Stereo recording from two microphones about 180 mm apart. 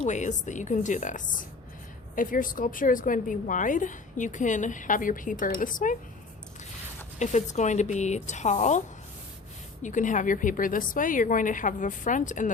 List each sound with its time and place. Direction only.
0.0 s a woman's voice: 40° left (ahead or behind)
7.2 s speech: 40° left (ahead or behind)
9.8 s a woman's voice: 45° left (ahead or behind)